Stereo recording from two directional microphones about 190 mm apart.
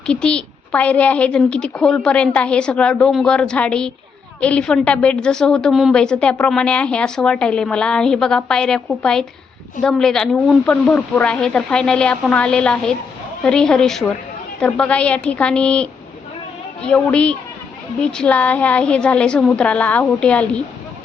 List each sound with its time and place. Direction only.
0.0 s a woman's voice: 5° left (ahead or behind)